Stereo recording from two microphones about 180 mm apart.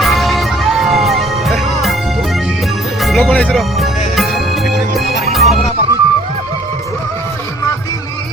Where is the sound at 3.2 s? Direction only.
10° left (ahead or behind).